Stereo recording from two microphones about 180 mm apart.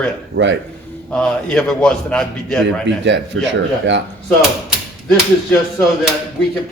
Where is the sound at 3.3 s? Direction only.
90° right.